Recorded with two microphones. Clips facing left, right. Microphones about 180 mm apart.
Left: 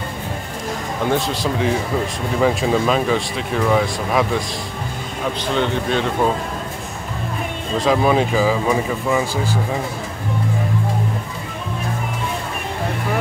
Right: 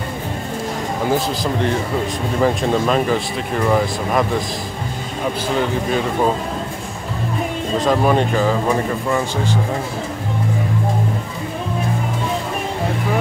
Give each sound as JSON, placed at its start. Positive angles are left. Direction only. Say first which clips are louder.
{"t": 1.1, "sound": "speech", "louder": "even", "side_deg": 0}
{"t": 5.6, "sound": "speech", "louder": "left 1 dB", "side_deg": -5}
{"t": 7.7, "sound": "speech", "louder": "even", "side_deg": 0}